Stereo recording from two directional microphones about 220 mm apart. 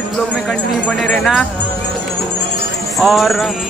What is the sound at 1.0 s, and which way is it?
Music, centre (ahead or behind).